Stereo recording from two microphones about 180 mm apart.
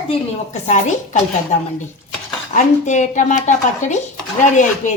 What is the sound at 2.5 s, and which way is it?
A woman's voice, 40° left (ahead or behind).